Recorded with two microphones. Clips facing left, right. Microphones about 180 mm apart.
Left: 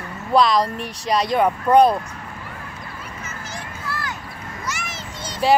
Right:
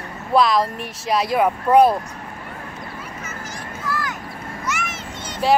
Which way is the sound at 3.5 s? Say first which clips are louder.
Right 4 dB; 30° left (ahead or behind).